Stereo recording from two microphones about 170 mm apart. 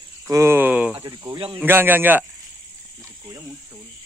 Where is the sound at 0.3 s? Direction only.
15° right (ahead or behind).